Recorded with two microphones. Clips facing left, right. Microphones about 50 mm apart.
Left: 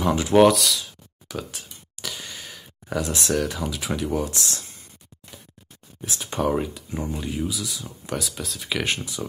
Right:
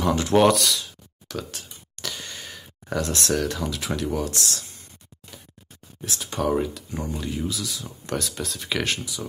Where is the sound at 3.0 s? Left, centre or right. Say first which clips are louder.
Even; centre.